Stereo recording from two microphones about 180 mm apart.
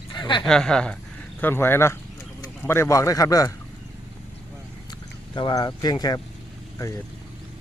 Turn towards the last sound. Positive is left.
turn(degrees=15)  # may be behind; listen again after turning